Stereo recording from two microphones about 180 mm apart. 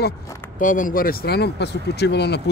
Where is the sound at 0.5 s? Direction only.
45° left (ahead or behind).